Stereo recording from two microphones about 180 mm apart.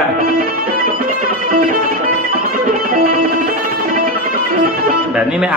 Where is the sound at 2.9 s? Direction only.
55° right (ahead or behind).